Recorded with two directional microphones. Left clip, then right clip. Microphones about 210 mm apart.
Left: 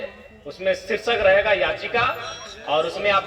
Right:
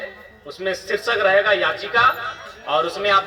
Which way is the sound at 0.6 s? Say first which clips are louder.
Left 1 dB; 40° right (ahead or behind).